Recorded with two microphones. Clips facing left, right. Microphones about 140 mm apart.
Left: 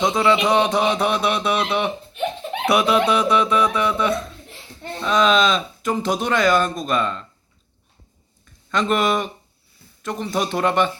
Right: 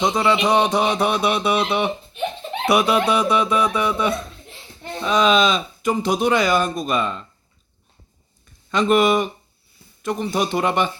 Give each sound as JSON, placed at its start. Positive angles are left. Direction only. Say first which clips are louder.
{"t": 0.0, "sound": "speech", "louder": "left 1 dB", "side_deg": 0}
{"t": 8.7, "sound": "speech", "louder": "right 3 dB", "side_deg": -5}